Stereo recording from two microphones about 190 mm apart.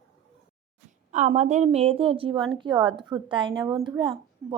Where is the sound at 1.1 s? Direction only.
40° right (ahead or behind).